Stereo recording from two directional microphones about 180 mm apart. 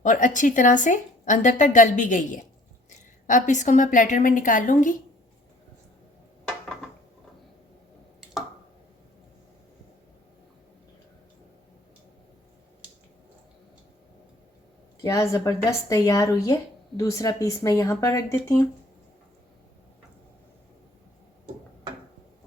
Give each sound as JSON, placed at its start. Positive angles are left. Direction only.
{"t": 0.0, "sound": "a woman's voice", "side_deg": 45}
{"t": 15.0, "sound": "speech", "side_deg": 15}